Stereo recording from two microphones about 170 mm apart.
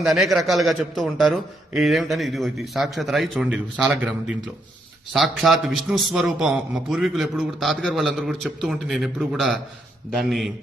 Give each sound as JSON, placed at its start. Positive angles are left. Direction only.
{"t": 0.0, "sound": "a man's voice", "side_deg": 0}